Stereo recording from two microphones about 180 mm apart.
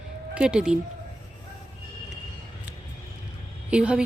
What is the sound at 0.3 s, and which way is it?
Speech, 5° right (ahead or behind).